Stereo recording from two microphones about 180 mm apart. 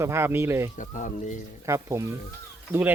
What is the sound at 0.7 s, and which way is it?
Speech, 45° left (ahead or behind).